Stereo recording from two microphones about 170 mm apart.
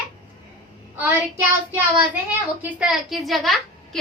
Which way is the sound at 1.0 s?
10° right (ahead or behind).